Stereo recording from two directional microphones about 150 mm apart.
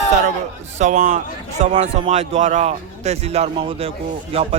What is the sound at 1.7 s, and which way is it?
Speech, 40° right (ahead or behind).